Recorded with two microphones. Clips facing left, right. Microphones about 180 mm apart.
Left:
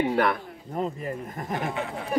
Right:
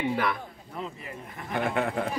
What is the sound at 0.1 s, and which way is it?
Speech, 50° left (ahead or behind).